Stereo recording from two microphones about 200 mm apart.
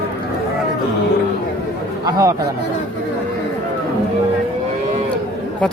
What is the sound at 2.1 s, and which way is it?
Speech, 15° right (ahead or behind).